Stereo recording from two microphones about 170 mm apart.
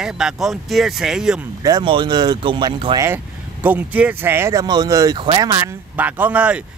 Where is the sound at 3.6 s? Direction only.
10° right (ahead or behind).